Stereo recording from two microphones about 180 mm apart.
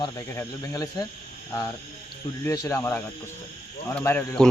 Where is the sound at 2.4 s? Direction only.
15° left (ahead or behind).